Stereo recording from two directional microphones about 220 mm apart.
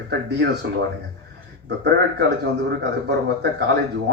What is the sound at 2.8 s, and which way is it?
Speech, 50° right (ahead or behind).